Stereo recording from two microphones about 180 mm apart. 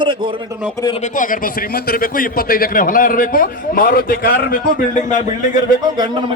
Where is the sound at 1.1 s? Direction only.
50° left (ahead or behind).